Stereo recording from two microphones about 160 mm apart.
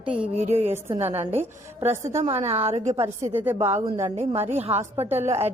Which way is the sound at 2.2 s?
40° right (ahead or behind).